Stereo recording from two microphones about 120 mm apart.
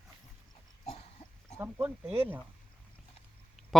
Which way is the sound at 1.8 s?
15° right (ahead or behind).